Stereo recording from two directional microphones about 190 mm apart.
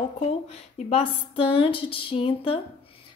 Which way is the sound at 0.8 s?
30° left (ahead or behind).